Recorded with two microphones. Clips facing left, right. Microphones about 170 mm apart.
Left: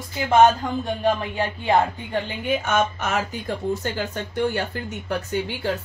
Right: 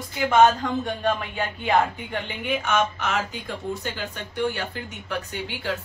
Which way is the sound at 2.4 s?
40° left (ahead or behind).